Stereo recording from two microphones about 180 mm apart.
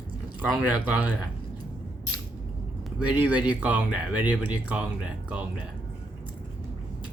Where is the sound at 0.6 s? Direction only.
10° right (ahead or behind).